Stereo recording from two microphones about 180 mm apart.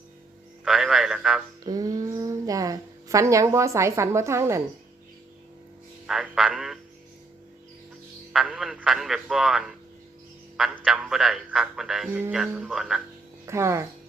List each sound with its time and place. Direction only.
0.6 s speech: centre (ahead or behind)
1.6 s a woman's voice: 20° right (ahead or behind)
6.1 s speech: centre (ahead or behind)
8.3 s a man's voice: centre (ahead or behind)
13.4 s speech: 15° right (ahead or behind)